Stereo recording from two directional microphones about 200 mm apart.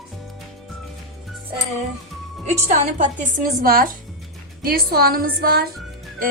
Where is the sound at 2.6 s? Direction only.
35° right (ahead or behind).